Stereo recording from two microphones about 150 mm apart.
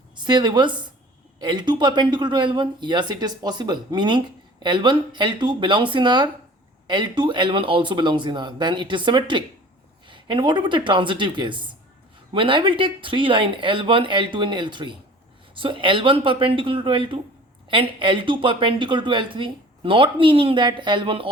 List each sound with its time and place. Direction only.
0.3 s speech: 30° right (ahead or behind)